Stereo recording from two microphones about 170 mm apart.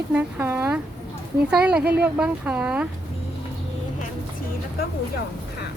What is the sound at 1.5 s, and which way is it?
Speech, 5° right (ahead or behind).